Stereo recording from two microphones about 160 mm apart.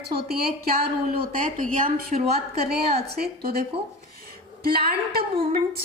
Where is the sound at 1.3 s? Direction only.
60° right (ahead or behind).